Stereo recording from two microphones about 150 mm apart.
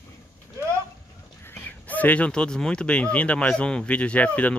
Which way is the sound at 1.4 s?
10° left (ahead or behind).